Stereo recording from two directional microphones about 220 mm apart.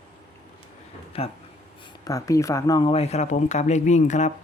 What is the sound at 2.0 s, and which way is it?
Speech, 15° left (ahead or behind).